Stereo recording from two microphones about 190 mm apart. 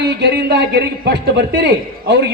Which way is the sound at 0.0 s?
60° right (ahead or behind).